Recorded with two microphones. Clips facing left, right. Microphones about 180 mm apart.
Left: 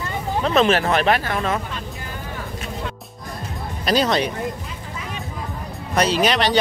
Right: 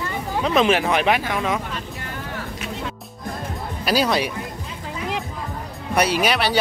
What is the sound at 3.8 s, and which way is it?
Speech, 5° right (ahead or behind).